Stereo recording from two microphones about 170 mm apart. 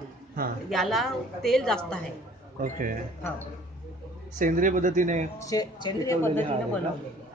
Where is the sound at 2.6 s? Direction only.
55° right (ahead or behind).